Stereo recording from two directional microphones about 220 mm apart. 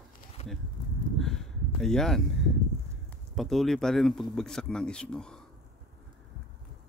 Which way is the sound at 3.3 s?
Centre (ahead or behind).